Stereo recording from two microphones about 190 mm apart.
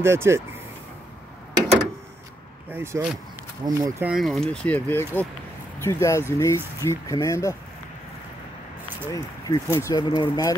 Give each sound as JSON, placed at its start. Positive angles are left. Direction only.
{"t": 0.0, "sound": "speech", "side_deg": -15}
{"t": 2.7, "sound": "speech", "side_deg": -10}
{"t": 4.1, "sound": "speech", "side_deg": 0}
{"t": 9.1, "sound": "speech", "side_deg": 20}